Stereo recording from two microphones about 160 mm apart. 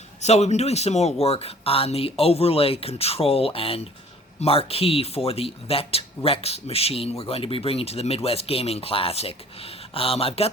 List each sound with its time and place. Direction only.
0.2 s speech: 45° left (ahead or behind)